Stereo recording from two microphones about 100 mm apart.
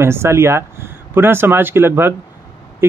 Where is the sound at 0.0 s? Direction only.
25° right (ahead or behind).